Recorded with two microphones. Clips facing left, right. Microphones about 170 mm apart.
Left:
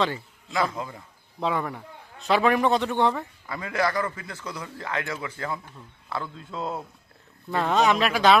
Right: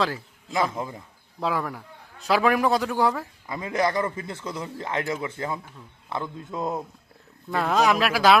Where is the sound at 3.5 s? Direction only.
20° right (ahead or behind).